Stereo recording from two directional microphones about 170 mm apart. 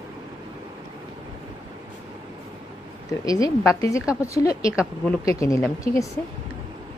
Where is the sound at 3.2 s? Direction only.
20° left (ahead or behind).